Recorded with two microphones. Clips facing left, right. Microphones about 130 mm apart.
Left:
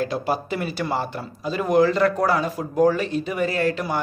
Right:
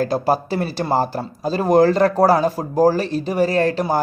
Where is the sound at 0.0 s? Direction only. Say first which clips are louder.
Right 5 dB; 40° right (ahead or behind).